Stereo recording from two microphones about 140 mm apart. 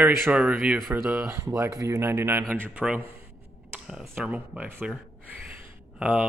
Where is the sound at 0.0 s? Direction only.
10° right (ahead or behind).